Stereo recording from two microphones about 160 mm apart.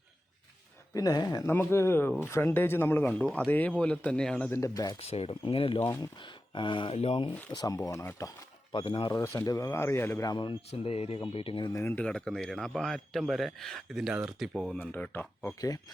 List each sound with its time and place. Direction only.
0.9 s speech: 25° left (ahead or behind); by 4.5 s 5° left (ahead or behind)
4.5 s speech: 20° left (ahead or behind)
4.9 s speech: 40° left (ahead or behind)
7.5 s speech: 25° left (ahead or behind)
8.7 s speech: 30° left (ahead or behind)
9.1 s speech: 20° left (ahead or behind)
11.8 s speech: 15° left (ahead or behind)
12.0 s a man's voice: 5° left (ahead or behind)
14.8 s speech: 10° left (ahead or behind)